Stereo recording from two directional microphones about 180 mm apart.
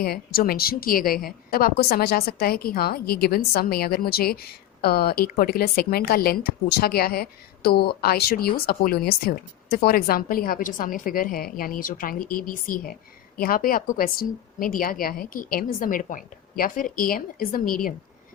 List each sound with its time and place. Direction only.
0.0 s a woman's voice: 55° left (ahead or behind)